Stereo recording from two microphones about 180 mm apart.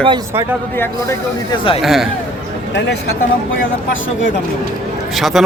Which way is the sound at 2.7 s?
75° left (ahead or behind).